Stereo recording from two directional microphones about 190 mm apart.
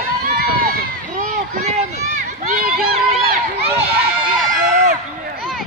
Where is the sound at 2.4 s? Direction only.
50° right (ahead or behind).